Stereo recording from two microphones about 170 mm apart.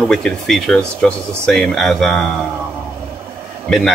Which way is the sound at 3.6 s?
5° left (ahead or behind).